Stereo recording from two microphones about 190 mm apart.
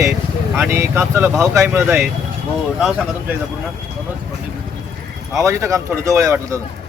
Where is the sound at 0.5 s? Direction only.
10° right (ahead or behind).